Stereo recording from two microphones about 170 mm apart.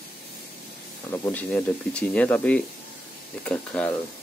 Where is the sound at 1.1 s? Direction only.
10° left (ahead or behind).